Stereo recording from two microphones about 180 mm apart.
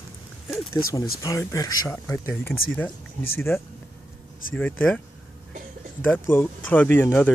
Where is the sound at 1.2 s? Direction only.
20° left (ahead or behind).